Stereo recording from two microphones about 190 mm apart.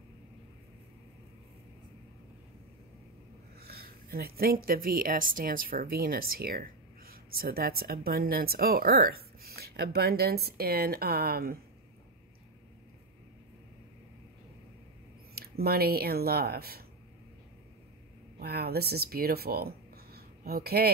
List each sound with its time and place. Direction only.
3.5 s a sound: 55° right (ahead or behind)
4.6 s speech: 50° right (ahead or behind)
15.3 s speech: 55° right (ahead or behind)
18.4 s speech: 55° right (ahead or behind)